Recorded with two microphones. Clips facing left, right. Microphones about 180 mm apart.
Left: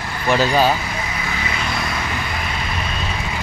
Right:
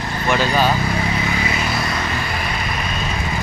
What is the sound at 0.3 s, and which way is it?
Speech, 40° left (ahead or behind).